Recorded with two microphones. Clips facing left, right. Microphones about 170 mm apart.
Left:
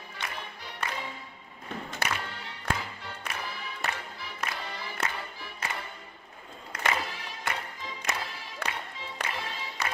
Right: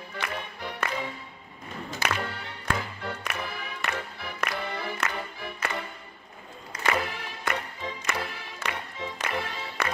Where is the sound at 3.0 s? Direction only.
60° right (ahead or behind).